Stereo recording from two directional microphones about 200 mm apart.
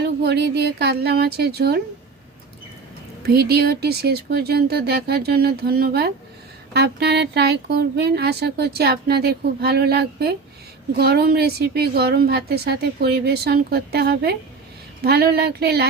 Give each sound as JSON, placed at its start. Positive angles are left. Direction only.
{"t": 0.0, "sound": "speech", "side_deg": -55}
{"t": 3.2, "sound": "speech", "side_deg": -50}